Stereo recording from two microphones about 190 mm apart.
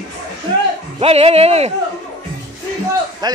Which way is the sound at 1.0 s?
30° right (ahead or behind).